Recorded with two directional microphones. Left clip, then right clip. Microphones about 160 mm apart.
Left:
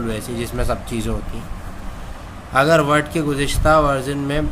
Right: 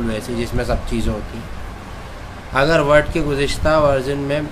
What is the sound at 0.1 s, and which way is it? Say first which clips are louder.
Speech: right 2 dB; 25° left (ahead or behind).